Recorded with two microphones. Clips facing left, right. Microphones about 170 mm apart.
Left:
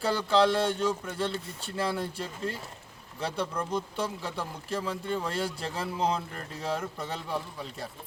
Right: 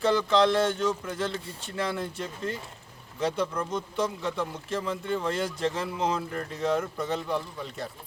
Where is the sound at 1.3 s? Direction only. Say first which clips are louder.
Even; 30° left (ahead or behind).